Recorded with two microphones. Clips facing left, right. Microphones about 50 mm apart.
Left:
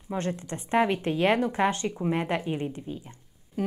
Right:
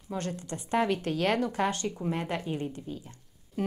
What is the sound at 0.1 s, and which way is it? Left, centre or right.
Speech, left.